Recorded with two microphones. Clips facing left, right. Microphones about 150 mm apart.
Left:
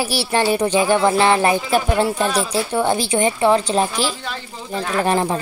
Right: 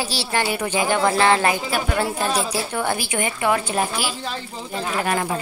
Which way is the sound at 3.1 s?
30° left (ahead or behind).